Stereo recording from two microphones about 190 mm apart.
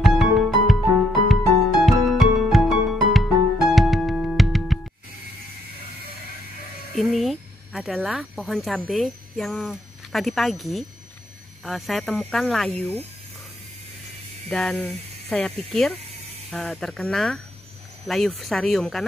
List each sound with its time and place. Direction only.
0.0 s music: centre (ahead or behind)
7.0 s speech: centre (ahead or behind)
14.5 s speech: 5° left (ahead or behind)